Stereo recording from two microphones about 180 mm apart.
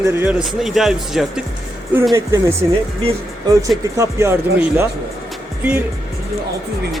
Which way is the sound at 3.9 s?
15° right (ahead or behind).